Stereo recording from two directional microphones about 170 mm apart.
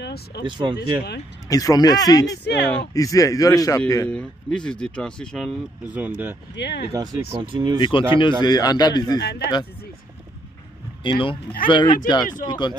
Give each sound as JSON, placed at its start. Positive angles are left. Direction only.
{"t": 0.0, "sound": "speech", "side_deg": 70}
{"t": 0.5, "sound": "speech", "side_deg": -25}
{"t": 1.5, "sound": "a man's voice", "side_deg": 20}
{"t": 2.4, "sound": "speech", "side_deg": 90}
{"t": 2.9, "sound": "a man's voice", "side_deg": 20}
{"t": 5.9, "sound": "speech", "side_deg": -10}
{"t": 6.5, "sound": "speech", "side_deg": 85}
{"t": 6.9, "sound": "speech", "side_deg": -20}
{"t": 7.8, "sound": "a man's voice", "side_deg": 30}
{"t": 9.2, "sound": "speech", "side_deg": 75}
{"t": 11.1, "sound": "a man's voice", "side_deg": 30}